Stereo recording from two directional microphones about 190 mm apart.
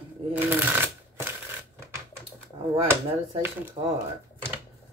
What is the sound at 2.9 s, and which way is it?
Speech, 10° right (ahead or behind).